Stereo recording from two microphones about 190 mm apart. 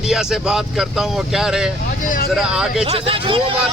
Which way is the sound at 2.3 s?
5° right (ahead or behind).